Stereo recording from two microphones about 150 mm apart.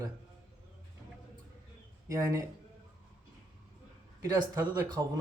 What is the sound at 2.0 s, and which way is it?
Speech, 20° right (ahead or behind).